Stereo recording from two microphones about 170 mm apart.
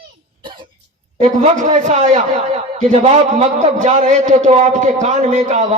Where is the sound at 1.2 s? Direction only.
45° right (ahead or behind).